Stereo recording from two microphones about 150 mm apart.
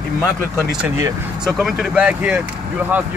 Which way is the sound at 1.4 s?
Centre (ahead or behind).